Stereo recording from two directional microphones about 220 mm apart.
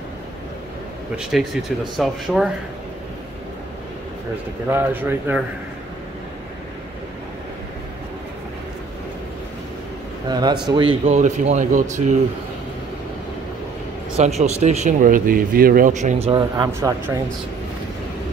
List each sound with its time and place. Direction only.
1.1 s speech: centre (ahead or behind)
4.6 s speech: 10° right (ahead or behind)
10.2 s speech: 20° right (ahead or behind)
14.4 s speech: 30° right (ahead or behind)
16.3 s speech: 20° right (ahead or behind)